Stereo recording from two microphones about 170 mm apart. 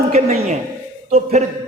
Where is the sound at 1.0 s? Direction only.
40° right (ahead or behind).